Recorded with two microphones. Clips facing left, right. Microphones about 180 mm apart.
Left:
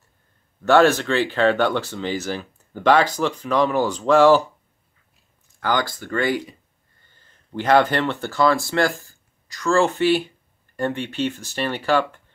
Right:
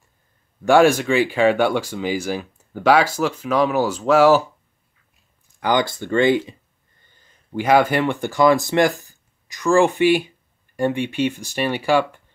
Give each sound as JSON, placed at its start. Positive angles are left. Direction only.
{"t": 0.7, "sound": "speech", "side_deg": -10}
{"t": 5.6, "sound": "speech", "side_deg": -20}
{"t": 7.5, "sound": "speech", "side_deg": -10}